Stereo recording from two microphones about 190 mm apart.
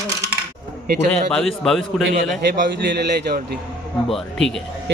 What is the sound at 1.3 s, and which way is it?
Speech, centre (ahead or behind).